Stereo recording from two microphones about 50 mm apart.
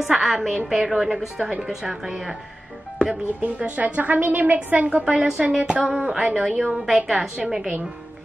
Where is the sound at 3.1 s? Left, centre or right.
Right.